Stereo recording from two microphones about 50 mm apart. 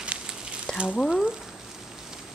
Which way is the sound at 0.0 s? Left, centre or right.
Right.